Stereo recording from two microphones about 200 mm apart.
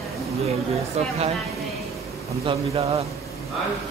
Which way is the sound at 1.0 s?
35° right (ahead or behind).